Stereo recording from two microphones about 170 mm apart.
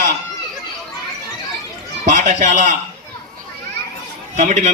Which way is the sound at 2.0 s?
45° right (ahead or behind).